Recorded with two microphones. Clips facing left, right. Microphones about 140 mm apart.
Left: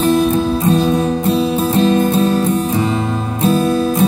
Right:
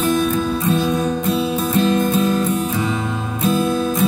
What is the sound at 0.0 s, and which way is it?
Music, 30° left (ahead or behind).